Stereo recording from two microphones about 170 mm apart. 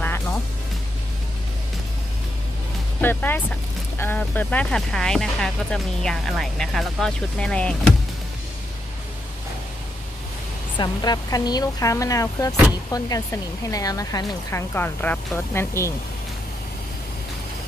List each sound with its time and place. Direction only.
3.0 s speech: 10° left (ahead or behind)
10.8 s speech: 25° left (ahead or behind)